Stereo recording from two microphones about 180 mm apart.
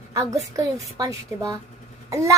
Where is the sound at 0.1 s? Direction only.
15° right (ahead or behind).